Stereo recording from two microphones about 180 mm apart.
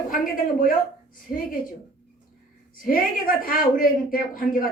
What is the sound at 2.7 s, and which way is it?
Speech, 50° left (ahead or behind).